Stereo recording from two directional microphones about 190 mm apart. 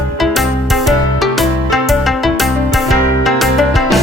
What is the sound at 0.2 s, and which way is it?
Music, centre (ahead or behind).